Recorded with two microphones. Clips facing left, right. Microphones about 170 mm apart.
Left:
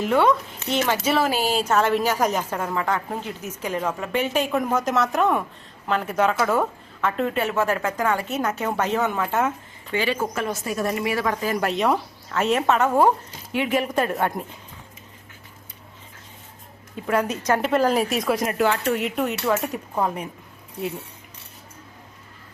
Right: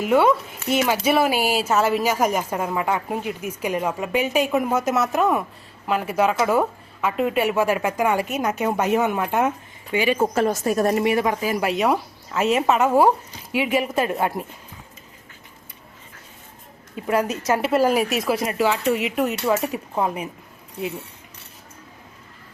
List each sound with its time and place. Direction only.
0.0 s a woman's voice: 5° right (ahead or behind)
10.2 s a woman's voice: 35° right (ahead or behind)
11.0 s a woman's voice: 20° right (ahead or behind)
16.9 s a woman's voice: 10° right (ahead or behind)